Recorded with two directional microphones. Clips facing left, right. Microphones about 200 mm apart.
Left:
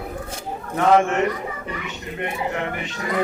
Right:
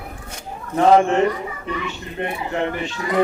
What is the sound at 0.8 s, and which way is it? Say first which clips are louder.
A man's voice: right 3 dB; 30° right (ahead or behind).